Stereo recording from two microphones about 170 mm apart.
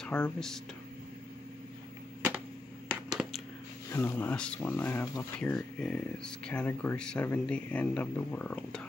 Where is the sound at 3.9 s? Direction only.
10° left (ahead or behind).